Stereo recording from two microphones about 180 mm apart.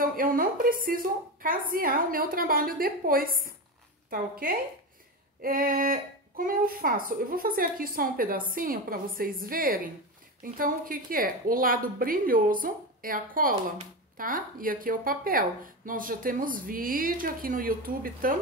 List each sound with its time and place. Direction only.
0.0 s a woman's voice: 50° right (ahead or behind)